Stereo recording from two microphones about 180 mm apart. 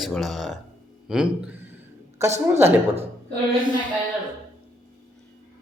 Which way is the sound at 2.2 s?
15° right (ahead or behind).